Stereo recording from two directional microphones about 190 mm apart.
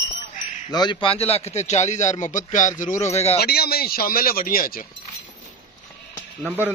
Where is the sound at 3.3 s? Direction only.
55° left (ahead or behind).